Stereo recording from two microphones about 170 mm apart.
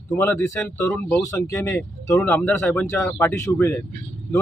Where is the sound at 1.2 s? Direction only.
20° left (ahead or behind).